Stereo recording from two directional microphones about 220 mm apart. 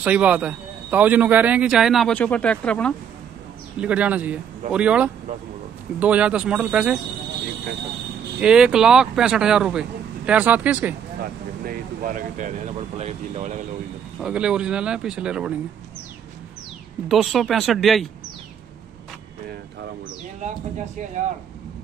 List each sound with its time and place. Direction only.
0.0 s a man's voice: 5° right (ahead or behind)
3.8 s a man's voice: 5° right (ahead or behind)
8.4 s a man's voice: 5° right (ahead or behind)
11.6 s speech: 40° right (ahead or behind)
14.2 s a man's voice: 5° right (ahead or behind)
17.1 s a man's voice: centre (ahead or behind)
20.4 s speech: 35° right (ahead or behind)